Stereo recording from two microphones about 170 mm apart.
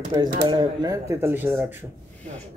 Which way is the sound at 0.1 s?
20° right (ahead or behind).